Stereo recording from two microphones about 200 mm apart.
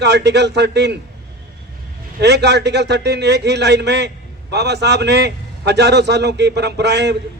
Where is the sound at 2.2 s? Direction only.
60° right (ahead or behind).